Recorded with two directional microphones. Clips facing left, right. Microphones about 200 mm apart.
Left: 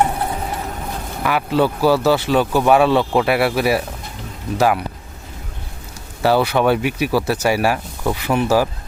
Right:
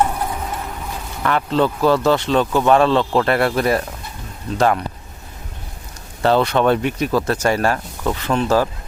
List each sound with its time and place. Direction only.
0.0 s a sound: 25° left (ahead or behind)
1.2 s speech: 10° left (ahead or behind)
6.2 s speech: 5° left (ahead or behind)